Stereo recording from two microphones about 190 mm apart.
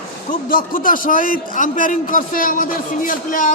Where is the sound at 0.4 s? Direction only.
45° left (ahead or behind).